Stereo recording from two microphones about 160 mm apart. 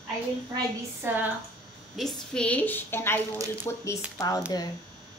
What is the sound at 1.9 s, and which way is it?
A woman's voice, 5° left (ahead or behind).